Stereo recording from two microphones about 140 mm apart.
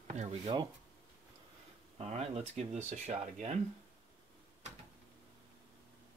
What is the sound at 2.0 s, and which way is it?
Speech, 50° right (ahead or behind).